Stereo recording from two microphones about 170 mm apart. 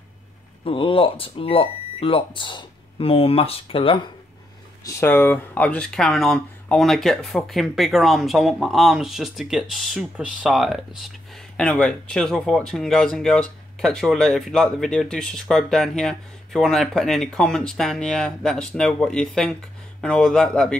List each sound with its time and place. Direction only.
0.7 s speech: 30° left (ahead or behind)
4.8 s speech: 10° left (ahead or behind)